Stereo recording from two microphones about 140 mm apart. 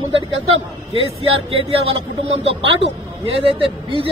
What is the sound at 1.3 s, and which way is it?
Speech, 40° right (ahead or behind).